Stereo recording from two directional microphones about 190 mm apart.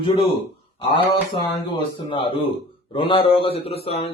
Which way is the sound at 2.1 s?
25° left (ahead or behind).